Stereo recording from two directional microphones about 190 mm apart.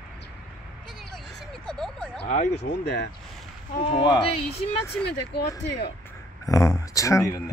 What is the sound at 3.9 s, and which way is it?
Speech, 25° left (ahead or behind).